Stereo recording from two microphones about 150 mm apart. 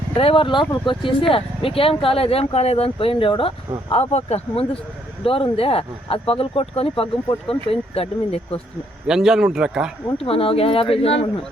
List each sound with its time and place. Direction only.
0.2 s speech: 35° left (ahead or behind)
9.0 s speech: 5° right (ahead or behind)
10.2 s speech: 40° left (ahead or behind)